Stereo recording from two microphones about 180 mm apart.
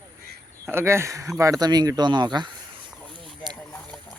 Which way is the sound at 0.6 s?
15° right (ahead or behind).